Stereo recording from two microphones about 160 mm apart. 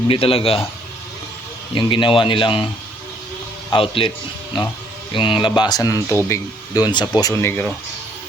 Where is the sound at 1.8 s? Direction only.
30° left (ahead or behind).